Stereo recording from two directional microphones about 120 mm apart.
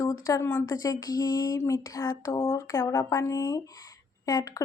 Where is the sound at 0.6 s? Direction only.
35° left (ahead or behind).